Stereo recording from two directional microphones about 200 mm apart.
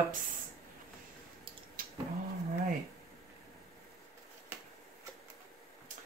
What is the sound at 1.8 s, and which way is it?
Cat, 45° right (ahead or behind).